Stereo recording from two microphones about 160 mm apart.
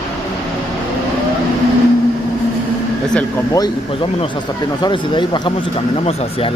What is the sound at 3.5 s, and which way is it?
A man's voice, 25° left (ahead or behind).